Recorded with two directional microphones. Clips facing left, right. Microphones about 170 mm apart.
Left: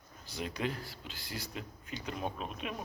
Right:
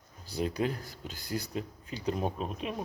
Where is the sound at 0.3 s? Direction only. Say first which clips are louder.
Right 5 dB; 35° right (ahead or behind).